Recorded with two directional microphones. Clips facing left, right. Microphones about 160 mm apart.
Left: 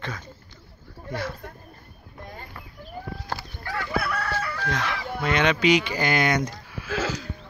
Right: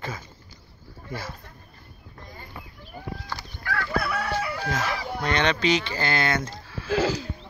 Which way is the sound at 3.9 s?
Centre (ahead or behind).